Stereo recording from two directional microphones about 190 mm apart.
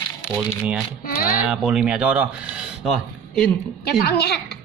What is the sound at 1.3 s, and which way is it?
Speech, 5° right (ahead or behind).